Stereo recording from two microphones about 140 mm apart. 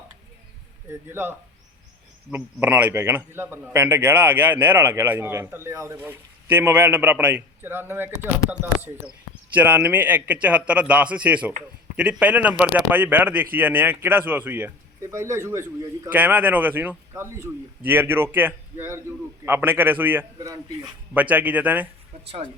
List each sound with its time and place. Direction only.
0.9 s a man's voice: 15° right (ahead or behind)